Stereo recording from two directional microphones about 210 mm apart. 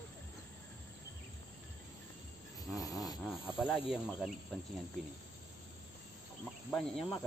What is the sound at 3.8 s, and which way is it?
Cricket, 5° right (ahead or behind).